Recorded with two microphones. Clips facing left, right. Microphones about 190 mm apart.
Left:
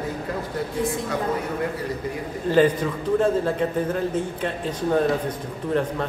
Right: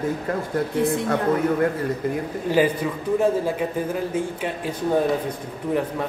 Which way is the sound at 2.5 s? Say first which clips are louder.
Left 2 dB; 10° right (ahead or behind).